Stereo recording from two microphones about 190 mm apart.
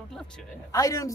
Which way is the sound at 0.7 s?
15° left (ahead or behind).